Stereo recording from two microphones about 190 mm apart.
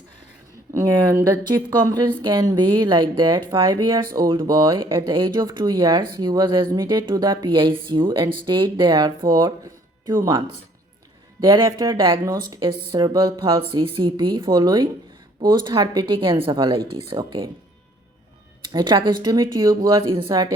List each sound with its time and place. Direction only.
0.7 s speech: 15° right (ahead or behind)
11.3 s speech: 25° right (ahead or behind)
18.7 s speech: 25° right (ahead or behind)